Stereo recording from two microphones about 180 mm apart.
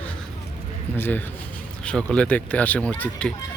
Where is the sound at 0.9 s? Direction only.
10° left (ahead or behind).